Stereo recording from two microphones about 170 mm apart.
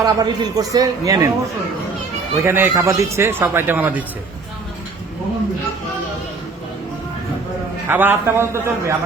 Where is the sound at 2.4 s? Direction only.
15° right (ahead or behind).